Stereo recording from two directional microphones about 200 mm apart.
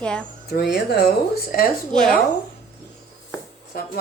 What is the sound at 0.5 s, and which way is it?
A woman's voice, 55° left (ahead or behind).